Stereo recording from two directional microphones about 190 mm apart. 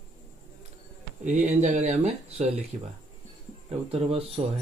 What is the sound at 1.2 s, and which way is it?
Speech, 40° right (ahead or behind).